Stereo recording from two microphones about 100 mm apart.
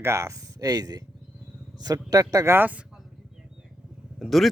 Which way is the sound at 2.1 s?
35° right (ahead or behind).